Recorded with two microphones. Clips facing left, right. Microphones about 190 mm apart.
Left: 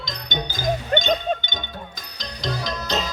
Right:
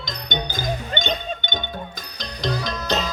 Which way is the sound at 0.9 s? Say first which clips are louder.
Left 9 dB; 55° left (ahead or behind).